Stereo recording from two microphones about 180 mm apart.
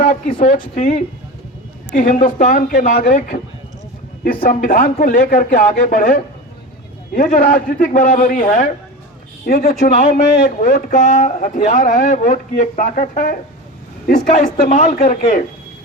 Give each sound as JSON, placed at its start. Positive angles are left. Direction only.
{"t": 0.0, "sound": "speech", "side_deg": 45}
{"t": 9.5, "sound": "speech", "side_deg": 55}
{"t": 9.8, "sound": "speech", "side_deg": 45}